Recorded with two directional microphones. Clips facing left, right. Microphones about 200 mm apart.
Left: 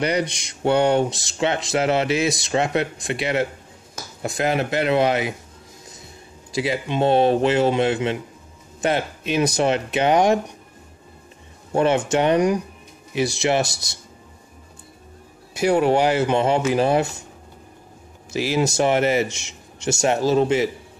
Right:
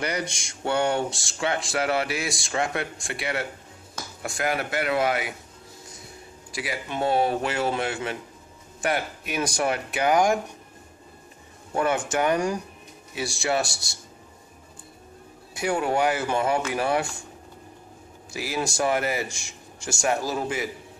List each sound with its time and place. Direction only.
0.0 s speech: 20° left (ahead or behind)
6.5 s speech: 25° left (ahead or behind)
11.7 s speech: 25° left (ahead or behind)
15.5 s speech: 25° left (ahead or behind)
18.3 s speech: 25° left (ahead or behind)